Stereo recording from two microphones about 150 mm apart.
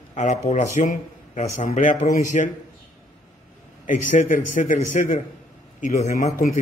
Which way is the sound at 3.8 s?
60° left (ahead or behind).